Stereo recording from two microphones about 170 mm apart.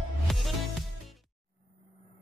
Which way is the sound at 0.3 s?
Centre (ahead or behind).